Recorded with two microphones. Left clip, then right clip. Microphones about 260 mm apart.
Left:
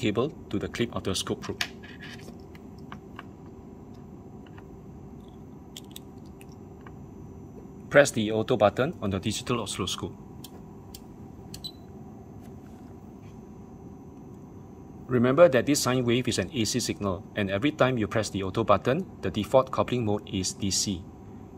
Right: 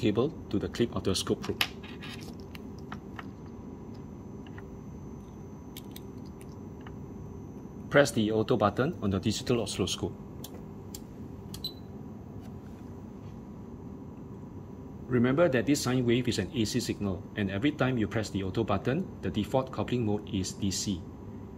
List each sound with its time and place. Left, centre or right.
0.0 s speech: centre
7.9 s speech: centre
15.0 s speech: left